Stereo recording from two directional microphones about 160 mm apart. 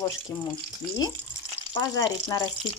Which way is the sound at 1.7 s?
25° left (ahead or behind).